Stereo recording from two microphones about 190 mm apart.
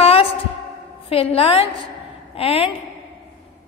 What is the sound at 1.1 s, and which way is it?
Speech, 30° left (ahead or behind).